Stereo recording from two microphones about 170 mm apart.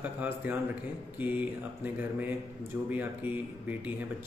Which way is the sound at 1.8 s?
10° right (ahead or behind).